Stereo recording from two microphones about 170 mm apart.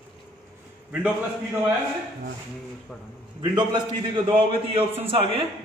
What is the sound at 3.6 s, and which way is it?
A man's voice, 25° right (ahead or behind).